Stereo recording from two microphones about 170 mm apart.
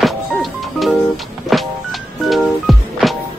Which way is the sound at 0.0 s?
Centre (ahead or behind).